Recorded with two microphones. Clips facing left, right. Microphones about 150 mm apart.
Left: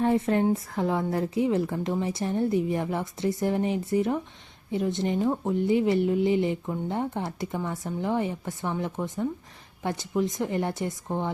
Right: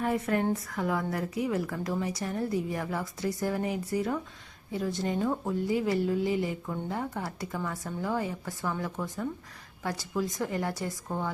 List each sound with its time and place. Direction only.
0.0 s a woman's voice: 25° left (ahead or behind)